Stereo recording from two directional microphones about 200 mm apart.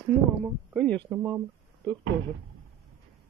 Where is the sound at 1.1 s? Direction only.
15° right (ahead or behind).